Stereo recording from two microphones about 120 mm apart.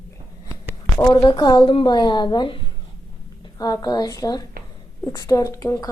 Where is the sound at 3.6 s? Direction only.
35° left (ahead or behind).